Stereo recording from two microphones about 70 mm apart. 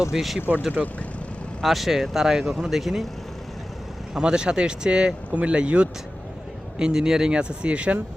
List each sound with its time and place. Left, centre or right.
0.0 s speech: centre
0.7 s speech: centre
1.6 s speech: centre
4.1 s speech: centre